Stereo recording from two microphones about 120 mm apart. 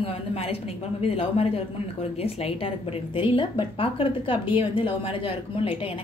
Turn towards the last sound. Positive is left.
turn(degrees=50)  # may be behind; listen again after turning